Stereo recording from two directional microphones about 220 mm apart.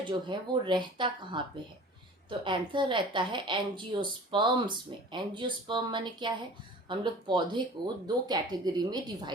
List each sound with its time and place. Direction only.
0.0 s a woman's voice: 20° right (ahead or behind)